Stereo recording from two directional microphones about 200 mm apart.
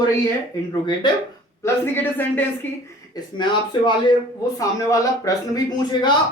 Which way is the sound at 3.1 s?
25° left (ahead or behind).